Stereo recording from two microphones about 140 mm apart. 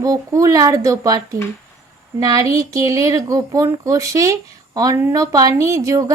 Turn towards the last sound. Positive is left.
turn(degrees=-25)  # may be behind; listen again after turning